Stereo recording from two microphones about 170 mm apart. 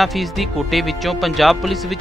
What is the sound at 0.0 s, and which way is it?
Speech, centre (ahead or behind).